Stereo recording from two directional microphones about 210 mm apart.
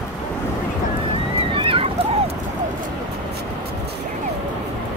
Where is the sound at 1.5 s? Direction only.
25° right (ahead or behind).